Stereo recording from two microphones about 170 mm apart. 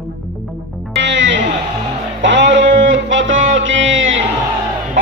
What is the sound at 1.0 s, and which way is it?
Speech, 90° right.